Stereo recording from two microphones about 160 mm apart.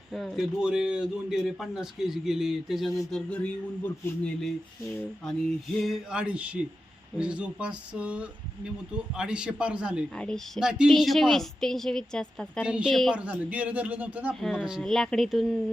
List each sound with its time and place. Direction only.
0.1 s speech: centre (ahead or behind)
5.8 s a man's voice: 5° right (ahead or behind)
12.6 s a man's voice: 5° right (ahead or behind)